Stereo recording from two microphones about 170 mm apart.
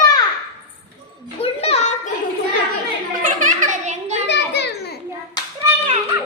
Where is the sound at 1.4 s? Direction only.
35° left (ahead or behind).